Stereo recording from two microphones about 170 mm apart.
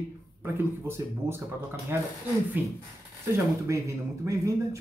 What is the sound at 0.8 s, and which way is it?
Speech, 15° right (ahead or behind).